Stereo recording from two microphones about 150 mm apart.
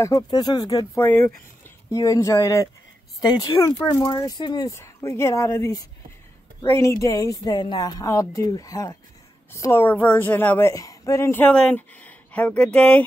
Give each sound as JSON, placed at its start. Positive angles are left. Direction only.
{"t": 0.0, "sound": "a woman's voice", "side_deg": 25}
{"t": 10.7, "sound": "speech", "side_deg": 25}